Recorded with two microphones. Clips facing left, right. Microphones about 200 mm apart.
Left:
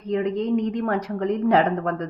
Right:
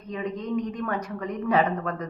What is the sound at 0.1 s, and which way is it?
Speech, 85° left.